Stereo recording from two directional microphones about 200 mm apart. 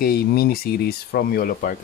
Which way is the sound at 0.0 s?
50° left (ahead or behind).